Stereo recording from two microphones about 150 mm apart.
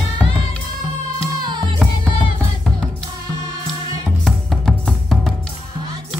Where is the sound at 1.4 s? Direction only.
30° right (ahead or behind).